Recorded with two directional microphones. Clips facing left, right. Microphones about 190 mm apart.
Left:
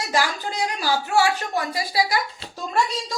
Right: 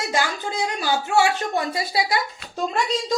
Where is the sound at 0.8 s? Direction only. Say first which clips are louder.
Right 1 dB; 25° right (ahead or behind).